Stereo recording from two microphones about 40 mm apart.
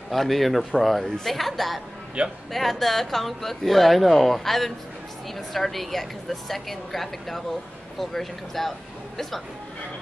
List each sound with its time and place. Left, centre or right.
0.1 s speech: centre
2.2 s speech: right
2.5 s speech: centre